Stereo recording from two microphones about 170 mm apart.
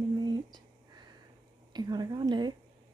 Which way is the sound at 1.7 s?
25° right (ahead or behind).